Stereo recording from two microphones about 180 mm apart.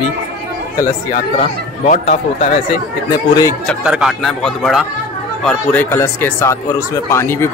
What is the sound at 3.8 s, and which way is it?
Speech, 5° right (ahead or behind).